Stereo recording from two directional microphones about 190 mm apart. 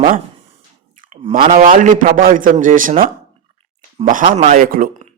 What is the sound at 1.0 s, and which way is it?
A man's voice, 40° right (ahead or behind).